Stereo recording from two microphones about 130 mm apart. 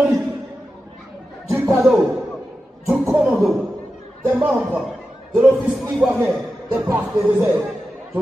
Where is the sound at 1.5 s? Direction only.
25° right (ahead or behind).